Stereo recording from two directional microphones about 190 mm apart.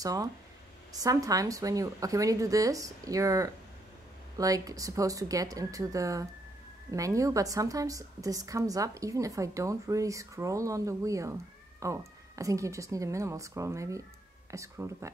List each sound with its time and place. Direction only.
0.0 s a woman's voice: 20° right (ahead or behind)